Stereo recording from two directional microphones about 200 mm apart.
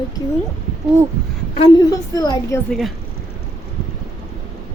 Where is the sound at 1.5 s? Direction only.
30° left (ahead or behind).